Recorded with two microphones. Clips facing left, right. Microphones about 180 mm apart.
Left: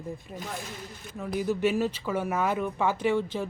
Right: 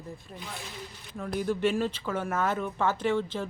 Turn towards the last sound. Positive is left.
turn(degrees=10)  # may be behind; listen again after turning